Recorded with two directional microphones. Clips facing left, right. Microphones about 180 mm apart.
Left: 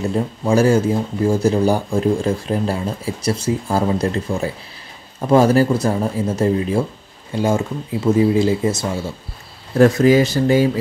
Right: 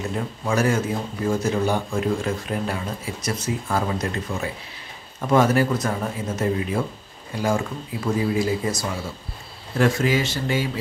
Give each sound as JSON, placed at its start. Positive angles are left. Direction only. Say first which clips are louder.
{"t": 0.1, "sound": "speech", "louder": "left 8 dB", "side_deg": 30}
{"t": 9.8, "sound": "speech", "louder": "left 8 dB", "side_deg": 40}